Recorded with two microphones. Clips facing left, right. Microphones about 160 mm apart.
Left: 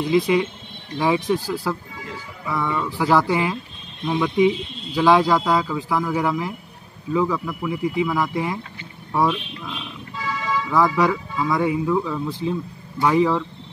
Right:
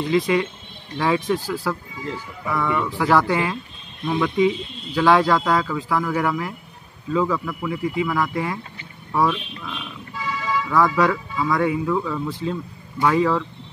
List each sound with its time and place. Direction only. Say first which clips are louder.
0.1 s speech: left 1 dB; 15° left (ahead or behind)